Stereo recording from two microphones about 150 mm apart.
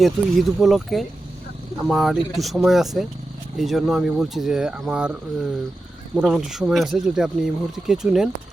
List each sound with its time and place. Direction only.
0.0 s speech: centre (ahead or behind)